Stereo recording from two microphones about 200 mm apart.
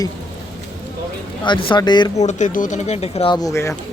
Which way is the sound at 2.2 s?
35° left (ahead or behind).